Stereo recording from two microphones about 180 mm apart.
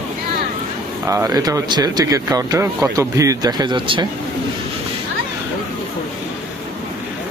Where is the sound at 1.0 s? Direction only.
15° right (ahead or behind).